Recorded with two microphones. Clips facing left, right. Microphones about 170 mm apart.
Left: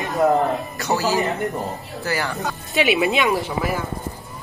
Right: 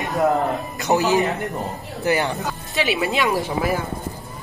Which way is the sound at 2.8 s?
15° left (ahead or behind).